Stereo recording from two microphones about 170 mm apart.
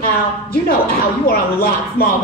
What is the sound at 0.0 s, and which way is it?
Speech, 65° left (ahead or behind).